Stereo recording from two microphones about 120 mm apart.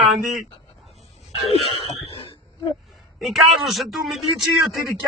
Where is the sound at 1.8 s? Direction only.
45° left (ahead or behind).